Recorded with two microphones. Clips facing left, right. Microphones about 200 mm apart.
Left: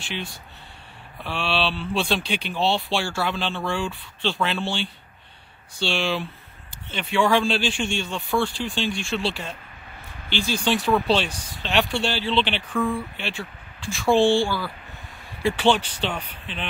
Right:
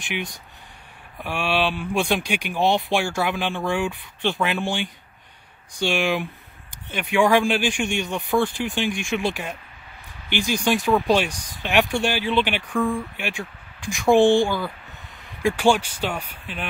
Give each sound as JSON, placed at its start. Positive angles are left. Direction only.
{"t": 0.0, "sound": "speech", "side_deg": -15}